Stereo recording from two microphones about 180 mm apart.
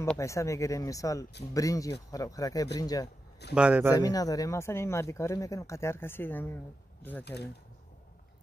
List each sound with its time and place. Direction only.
0.2 s speech: 15° left (ahead or behind)
3.5 s speech: 5° right (ahead or behind)
3.9 s speech: 20° left (ahead or behind)